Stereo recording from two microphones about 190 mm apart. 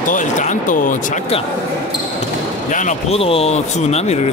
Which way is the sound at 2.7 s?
35° left (ahead or behind).